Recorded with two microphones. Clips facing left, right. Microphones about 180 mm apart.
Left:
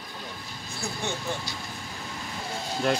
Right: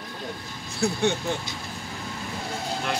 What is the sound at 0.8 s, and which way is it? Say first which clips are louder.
Speech: right 10 dB; 80° right.